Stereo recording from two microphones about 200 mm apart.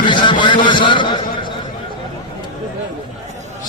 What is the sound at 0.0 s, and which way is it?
Vehicle, 25° left (ahead or behind).